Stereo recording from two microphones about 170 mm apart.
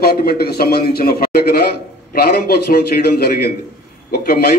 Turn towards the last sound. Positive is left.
turn(degrees=65)  # may be behind; listen again after turning